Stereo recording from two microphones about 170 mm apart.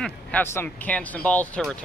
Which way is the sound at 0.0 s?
10° left (ahead or behind).